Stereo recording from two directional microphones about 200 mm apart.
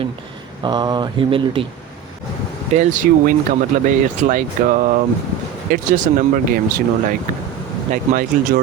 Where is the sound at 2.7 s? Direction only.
40° right (ahead or behind).